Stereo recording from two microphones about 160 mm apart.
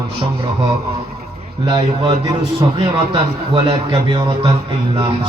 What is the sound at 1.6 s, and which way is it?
Speech, 30° right (ahead or behind).